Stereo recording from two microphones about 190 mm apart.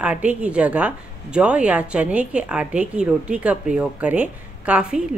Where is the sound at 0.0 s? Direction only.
5° right (ahead or behind).